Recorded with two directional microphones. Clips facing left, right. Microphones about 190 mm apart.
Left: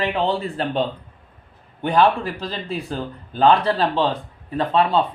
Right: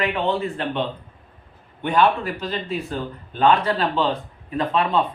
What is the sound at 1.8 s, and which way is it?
Speech, 35° left (ahead or behind).